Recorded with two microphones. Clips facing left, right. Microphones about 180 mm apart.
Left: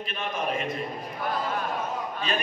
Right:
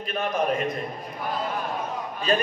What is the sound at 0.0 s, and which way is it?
Speech, 40° right (ahead or behind).